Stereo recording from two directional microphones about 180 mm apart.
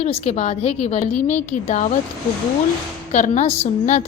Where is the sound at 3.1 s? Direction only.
40° left (ahead or behind).